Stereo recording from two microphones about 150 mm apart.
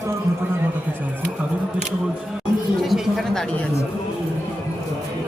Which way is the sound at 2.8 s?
Centre (ahead or behind).